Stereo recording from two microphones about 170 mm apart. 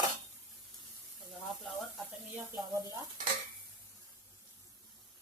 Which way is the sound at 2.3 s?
20° right (ahead or behind).